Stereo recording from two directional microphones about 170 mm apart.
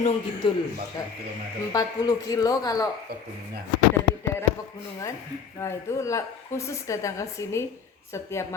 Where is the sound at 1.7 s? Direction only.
20° left (ahead or behind).